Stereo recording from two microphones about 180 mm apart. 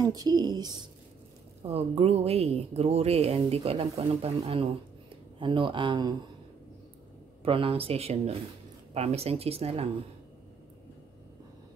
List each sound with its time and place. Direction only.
0.0 s a woman's voice: 20° right (ahead or behind)
1.6 s speech: 35° right (ahead or behind)
7.4 s speech: 30° right (ahead or behind)